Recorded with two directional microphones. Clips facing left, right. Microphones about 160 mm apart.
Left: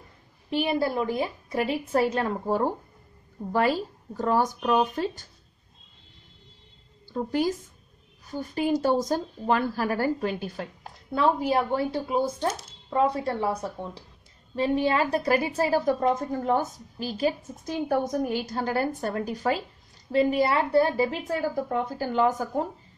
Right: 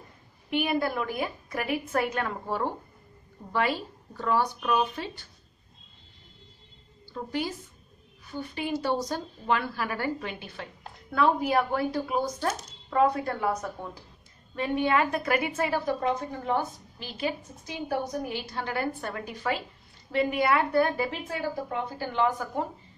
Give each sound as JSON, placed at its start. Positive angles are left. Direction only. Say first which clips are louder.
{"t": 0.5, "sound": "a woman's voice", "louder": "left 2 dB", "side_deg": 30}
{"t": 7.1, "sound": "a woman's voice", "louder": "left 6 dB", "side_deg": 45}
{"t": 11.1, "sound": "a woman's voice", "louder": "left 1 dB", "side_deg": 30}